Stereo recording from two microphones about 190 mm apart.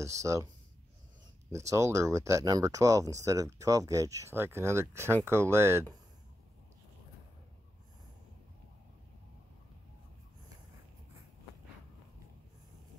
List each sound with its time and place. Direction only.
0.0 s speech: 15° right (ahead or behind)
1.7 s speech: 15° right (ahead or behind)